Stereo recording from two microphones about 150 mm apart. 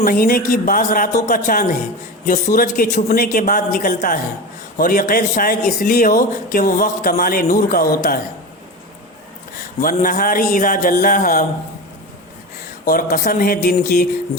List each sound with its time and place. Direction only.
0.0 s speech: 70° left (ahead or behind)
9.8 s speech: 70° left (ahead or behind)
12.8 s speech: 70° left (ahead or behind)